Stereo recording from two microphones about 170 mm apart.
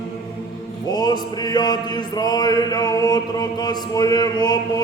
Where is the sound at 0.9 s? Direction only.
25° left (ahead or behind).